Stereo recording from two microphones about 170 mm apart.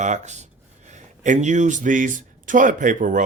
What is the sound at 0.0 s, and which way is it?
Speech, 45° right (ahead or behind).